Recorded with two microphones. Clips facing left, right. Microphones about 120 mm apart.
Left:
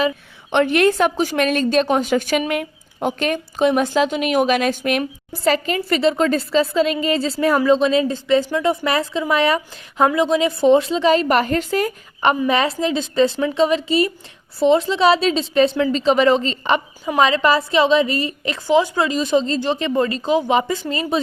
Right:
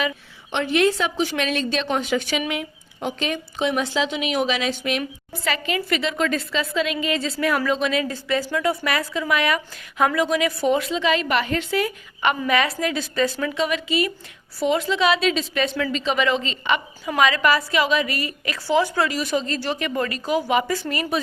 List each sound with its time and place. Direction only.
0.5 s a woman's voice: 55° left (ahead or behind)
5.3 s a woman's voice: 35° left (ahead or behind)